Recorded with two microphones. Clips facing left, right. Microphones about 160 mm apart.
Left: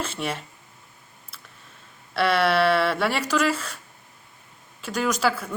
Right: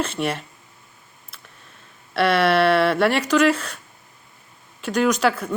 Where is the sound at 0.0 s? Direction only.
65° right (ahead or behind).